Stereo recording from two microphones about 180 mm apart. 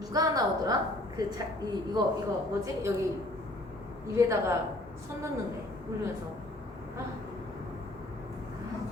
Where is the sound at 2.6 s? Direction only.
15° right (ahead or behind).